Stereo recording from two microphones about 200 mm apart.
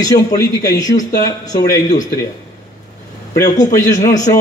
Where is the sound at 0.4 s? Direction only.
15° left (ahead or behind).